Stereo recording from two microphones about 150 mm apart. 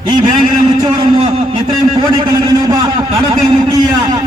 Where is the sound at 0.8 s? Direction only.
35° right (ahead or behind).